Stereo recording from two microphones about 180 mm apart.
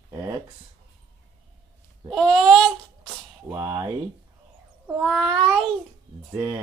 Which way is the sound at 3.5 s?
20° right (ahead or behind).